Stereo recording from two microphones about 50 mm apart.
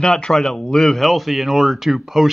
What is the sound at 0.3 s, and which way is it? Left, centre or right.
Speech, centre.